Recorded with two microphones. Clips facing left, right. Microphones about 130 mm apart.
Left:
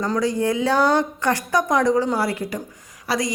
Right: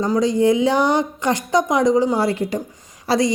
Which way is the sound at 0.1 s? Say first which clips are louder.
Right 6 dB; 20° right (ahead or behind).